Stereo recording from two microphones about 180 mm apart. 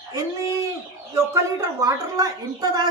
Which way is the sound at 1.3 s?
20° right (ahead or behind).